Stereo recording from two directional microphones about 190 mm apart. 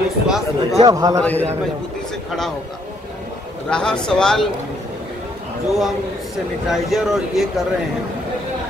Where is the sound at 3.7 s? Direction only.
5° left (ahead or behind).